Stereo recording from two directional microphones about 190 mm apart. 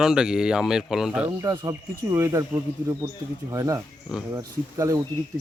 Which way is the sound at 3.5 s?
20° right (ahead or behind).